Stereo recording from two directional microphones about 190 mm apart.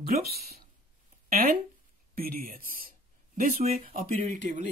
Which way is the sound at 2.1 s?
50° right (ahead or behind).